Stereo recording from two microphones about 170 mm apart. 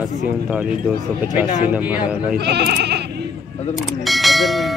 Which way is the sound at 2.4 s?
75° right (ahead or behind).